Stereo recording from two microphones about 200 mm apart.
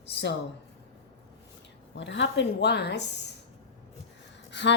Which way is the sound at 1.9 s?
65° left (ahead or behind).